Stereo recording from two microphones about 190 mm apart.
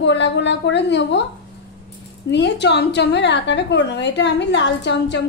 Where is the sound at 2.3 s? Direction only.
65° left (ahead or behind).